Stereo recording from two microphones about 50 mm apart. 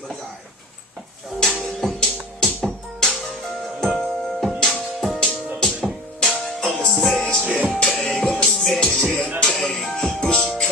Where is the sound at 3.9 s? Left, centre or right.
Centre.